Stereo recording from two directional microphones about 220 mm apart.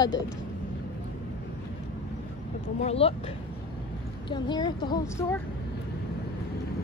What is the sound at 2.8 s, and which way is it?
Speech, 25° left (ahead or behind).